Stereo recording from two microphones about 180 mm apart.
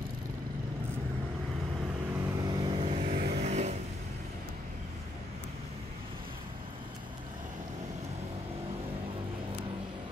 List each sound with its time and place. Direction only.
2.2 s vehicle: 20° right (ahead or behind)
3.0 s vehicle: 55° right (ahead or behind)
3.3 s vehicle: 40° right (ahead or behind)